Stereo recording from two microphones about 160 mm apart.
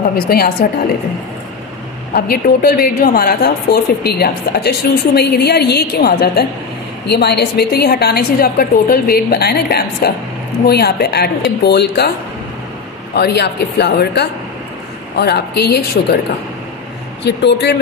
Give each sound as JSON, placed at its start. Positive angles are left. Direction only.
{"t": 0.3, "sound": "a woman's voice", "side_deg": 70}
{"t": 2.1, "sound": "a woman's voice", "side_deg": 70}
{"t": 7.1, "sound": "a woman's voice", "side_deg": 90}
{"t": 13.1, "sound": "speech", "side_deg": 90}
{"t": 17.2, "sound": "speech", "side_deg": 90}